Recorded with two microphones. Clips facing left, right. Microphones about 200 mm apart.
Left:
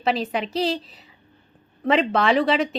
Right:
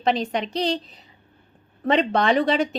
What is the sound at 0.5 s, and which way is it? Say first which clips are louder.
Speech: left 1 dB; 5° left (ahead or behind).